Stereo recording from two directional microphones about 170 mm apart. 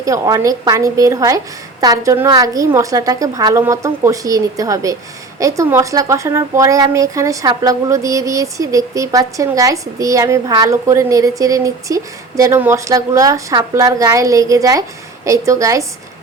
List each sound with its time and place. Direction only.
0.0 s a woman's voice: 20° right (ahead or behind)